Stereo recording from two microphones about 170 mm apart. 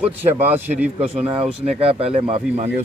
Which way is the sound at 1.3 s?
35° right (ahead or behind).